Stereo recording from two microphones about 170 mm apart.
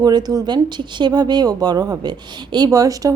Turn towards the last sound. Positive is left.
turn(degrees=-20)  # may be behind; listen again after turning